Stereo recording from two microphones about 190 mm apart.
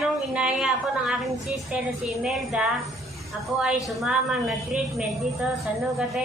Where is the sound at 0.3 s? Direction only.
5° right (ahead or behind).